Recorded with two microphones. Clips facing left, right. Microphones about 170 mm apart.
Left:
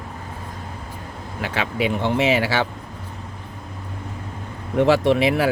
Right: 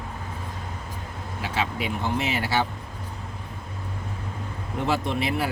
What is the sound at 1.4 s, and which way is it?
Speech, 80° left.